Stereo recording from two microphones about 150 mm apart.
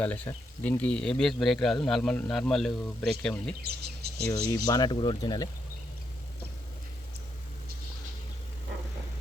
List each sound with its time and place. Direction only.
0.0 s speech: 10° left (ahead or behind)
3.6 s speech: 90° right
4.4 s speech: 25° left (ahead or behind)